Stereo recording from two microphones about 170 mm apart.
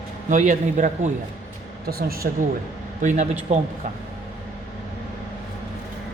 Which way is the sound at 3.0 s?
45° right (ahead or behind).